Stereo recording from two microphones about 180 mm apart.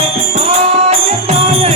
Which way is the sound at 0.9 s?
35° right (ahead or behind).